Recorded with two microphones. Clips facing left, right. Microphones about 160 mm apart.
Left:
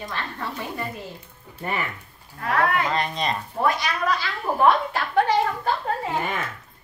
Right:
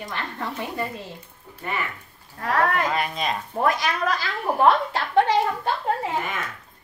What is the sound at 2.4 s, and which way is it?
Speech, 40° right (ahead or behind).